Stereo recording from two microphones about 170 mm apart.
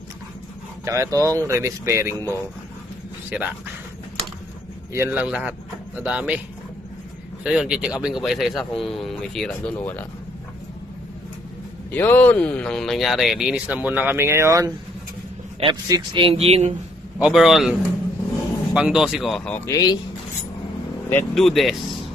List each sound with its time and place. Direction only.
0.8 s speech: 15° right (ahead or behind)
3.3 s speech: 10° right (ahead or behind)
4.9 s speech: 10° right (ahead or behind)
7.4 s speech: 5° right (ahead or behind)
11.9 s speech: 10° left (ahead or behind); by 16.7 s 40° right (ahead or behind)
17.2 s speech: centre (ahead or behind); by 20.0 s 20° left (ahead or behind)
21.1 s speech: 5° left (ahead or behind)